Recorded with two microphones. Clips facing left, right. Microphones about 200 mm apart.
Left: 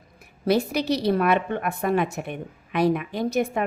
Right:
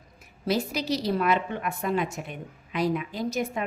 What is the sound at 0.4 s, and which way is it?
A woman's voice, 60° left (ahead or behind).